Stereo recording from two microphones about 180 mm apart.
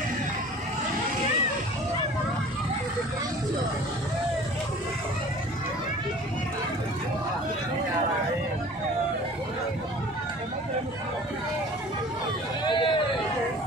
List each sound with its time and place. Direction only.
12.6 s hubbub: 25° left (ahead or behind)